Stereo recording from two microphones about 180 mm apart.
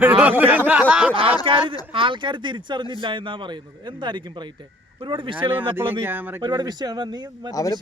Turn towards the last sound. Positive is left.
turn(degrees=20)  # may be behind; listen again after turning